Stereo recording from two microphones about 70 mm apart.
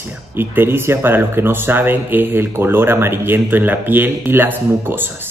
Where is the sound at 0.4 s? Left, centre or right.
Right.